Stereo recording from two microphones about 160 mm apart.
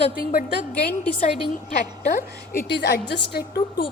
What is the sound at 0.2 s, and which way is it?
Speech, 65° left (ahead or behind).